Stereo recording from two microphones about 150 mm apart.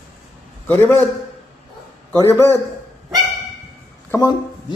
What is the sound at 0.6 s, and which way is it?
Speech, 15° left (ahead or behind).